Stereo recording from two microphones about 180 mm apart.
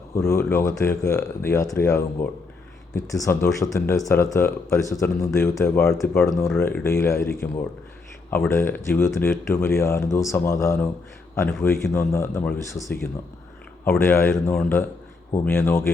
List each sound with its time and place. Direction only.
0.1 s speech: 15° left (ahead or behind)
8.4 s speech: 10° left (ahead or behind)